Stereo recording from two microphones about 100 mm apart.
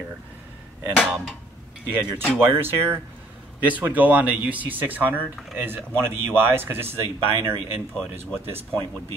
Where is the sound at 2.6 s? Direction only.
25° right (ahead or behind).